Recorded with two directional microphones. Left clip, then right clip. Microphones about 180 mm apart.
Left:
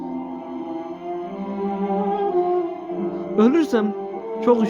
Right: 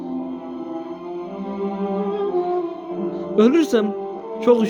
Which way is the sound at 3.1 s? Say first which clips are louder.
Right 2 dB; 20° right (ahead or behind).